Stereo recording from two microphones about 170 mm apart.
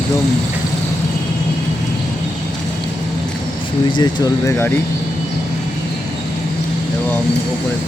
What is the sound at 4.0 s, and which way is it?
Speech, 25° left (ahead or behind).